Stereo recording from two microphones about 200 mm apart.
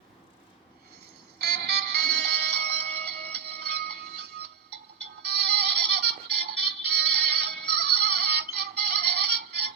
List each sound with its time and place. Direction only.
1.4 s music: 55° right (ahead or behind)